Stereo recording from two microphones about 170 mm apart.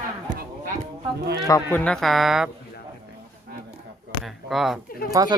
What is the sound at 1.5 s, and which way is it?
Speech, 10° left (ahead or behind).